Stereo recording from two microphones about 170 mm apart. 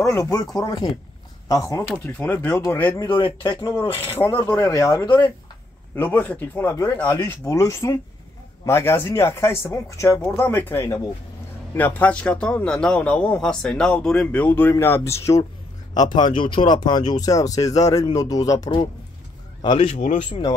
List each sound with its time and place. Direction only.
0.0 s a man's voice: 15° left (ahead or behind)
3.2 s a man's voice: 25° left (ahead or behind)
5.9 s a man's voice: 10° left (ahead or behind); by 19.9 s 25° left (ahead or behind)
19.9 s speech: 50° left (ahead or behind)
20.2 s speech: 25° left (ahead or behind)